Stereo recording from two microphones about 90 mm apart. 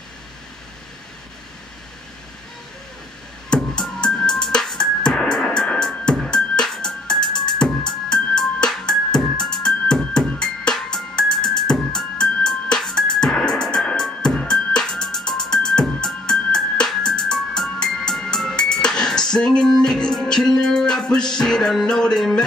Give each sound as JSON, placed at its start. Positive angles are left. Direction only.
{"t": 3.4, "sound": "music", "side_deg": 10}
{"t": 7.3, "sound": "music", "side_deg": 50}
{"t": 8.1, "sound": "music", "side_deg": 10}